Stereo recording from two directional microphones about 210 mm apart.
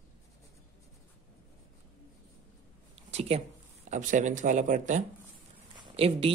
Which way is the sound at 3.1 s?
30° right (ahead or behind).